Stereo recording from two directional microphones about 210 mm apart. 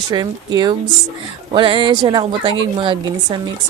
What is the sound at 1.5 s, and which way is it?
Speech, 25° right (ahead or behind).